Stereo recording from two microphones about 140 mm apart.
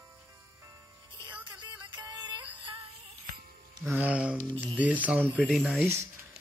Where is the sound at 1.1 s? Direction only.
35° right (ahead or behind).